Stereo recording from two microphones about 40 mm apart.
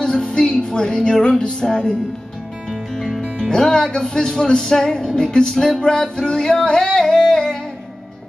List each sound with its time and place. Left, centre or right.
0.0 s music: left
2.9 s speech: centre
5.3 s music: centre